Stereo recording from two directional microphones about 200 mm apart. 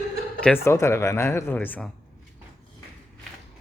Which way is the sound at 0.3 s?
10° left (ahead or behind).